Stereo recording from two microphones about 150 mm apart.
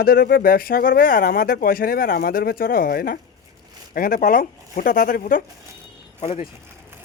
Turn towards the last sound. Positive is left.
turn(degrees=40)  # may be behind; listen again after turning